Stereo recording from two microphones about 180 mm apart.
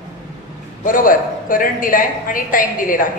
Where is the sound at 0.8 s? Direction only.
50° left (ahead or behind).